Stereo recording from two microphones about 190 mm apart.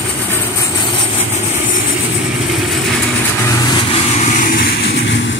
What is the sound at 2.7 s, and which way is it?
Vehicle, 10° left (ahead or behind).